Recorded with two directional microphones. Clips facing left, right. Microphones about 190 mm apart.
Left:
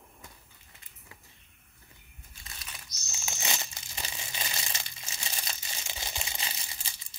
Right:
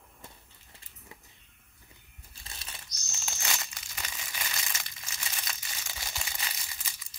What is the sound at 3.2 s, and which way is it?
Crumpling, 20° left (ahead or behind).